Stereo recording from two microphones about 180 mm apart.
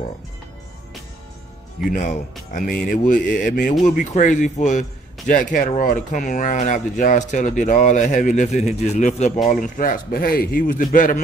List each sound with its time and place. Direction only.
1.9 s speech: 45° left (ahead or behind)